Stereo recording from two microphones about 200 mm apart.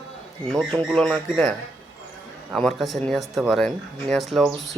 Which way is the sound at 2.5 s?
Centre (ahead or behind).